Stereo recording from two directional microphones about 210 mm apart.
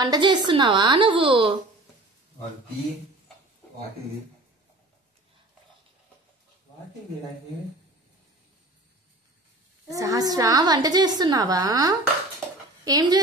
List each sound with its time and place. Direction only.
0.0 s a woman's voice: 20° right (ahead or behind)
9.8 s a woman's voice: 15° right (ahead or behind)